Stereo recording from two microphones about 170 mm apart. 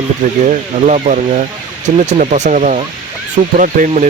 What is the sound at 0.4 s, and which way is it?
Speech, 40° right (ahead or behind).